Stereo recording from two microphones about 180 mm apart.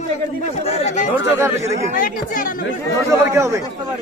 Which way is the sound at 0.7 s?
35° left (ahead or behind).